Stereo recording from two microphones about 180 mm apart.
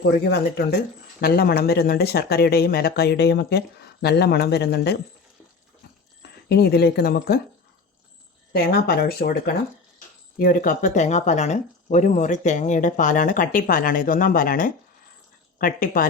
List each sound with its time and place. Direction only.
0.0 s speech: 65° left (ahead or behind)
6.2 s speech: 65° left (ahead or behind)
8.5 s speech: 60° left (ahead or behind)
10.3 s speech: 50° left (ahead or behind)